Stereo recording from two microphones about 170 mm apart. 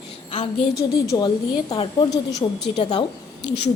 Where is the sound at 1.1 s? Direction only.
25° left (ahead or behind).